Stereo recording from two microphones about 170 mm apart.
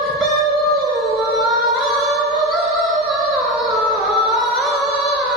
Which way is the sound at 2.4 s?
Centre (ahead or behind).